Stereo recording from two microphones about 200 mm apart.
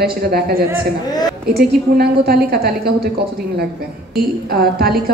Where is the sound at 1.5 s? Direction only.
50° right (ahead or behind).